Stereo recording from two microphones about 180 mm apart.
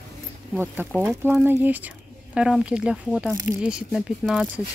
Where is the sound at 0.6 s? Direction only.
10° right (ahead or behind).